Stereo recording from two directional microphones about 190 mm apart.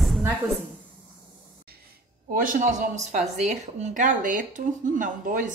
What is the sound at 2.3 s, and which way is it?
A man's voice, 40° right (ahead or behind).